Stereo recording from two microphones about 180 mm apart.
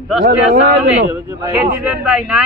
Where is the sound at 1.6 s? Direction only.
5° right (ahead or behind).